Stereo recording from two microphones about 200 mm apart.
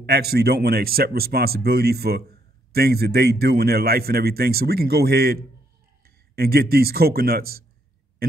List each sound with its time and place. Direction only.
0.0 s a man's voice: 55° right (ahead or behind)